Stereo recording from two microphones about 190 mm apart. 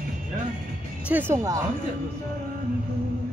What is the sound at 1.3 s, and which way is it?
Speech, 15° right (ahead or behind).